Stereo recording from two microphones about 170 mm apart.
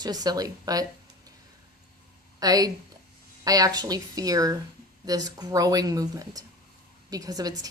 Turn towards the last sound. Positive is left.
turn(degrees=-20)  # may be behind; listen again after turning